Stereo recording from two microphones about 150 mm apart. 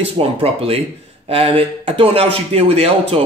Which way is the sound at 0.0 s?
40° right (ahead or behind).